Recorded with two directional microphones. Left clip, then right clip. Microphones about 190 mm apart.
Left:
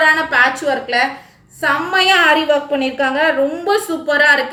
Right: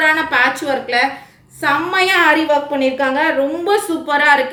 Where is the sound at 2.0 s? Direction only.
20° right (ahead or behind).